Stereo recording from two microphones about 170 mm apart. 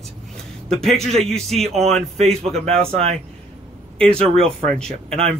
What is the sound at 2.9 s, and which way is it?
Speech, 35° right (ahead or behind).